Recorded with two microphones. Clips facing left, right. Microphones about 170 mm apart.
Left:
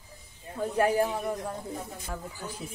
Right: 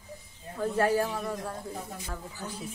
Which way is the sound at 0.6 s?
15° left (ahead or behind).